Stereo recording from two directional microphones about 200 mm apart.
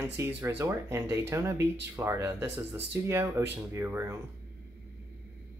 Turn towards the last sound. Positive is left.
turn(degrees=-10)  # may be behind; listen again after turning